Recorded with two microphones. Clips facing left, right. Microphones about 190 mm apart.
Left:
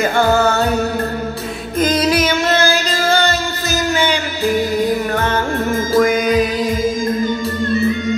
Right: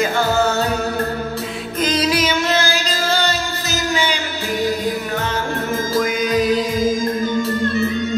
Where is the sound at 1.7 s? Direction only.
50° left (ahead or behind).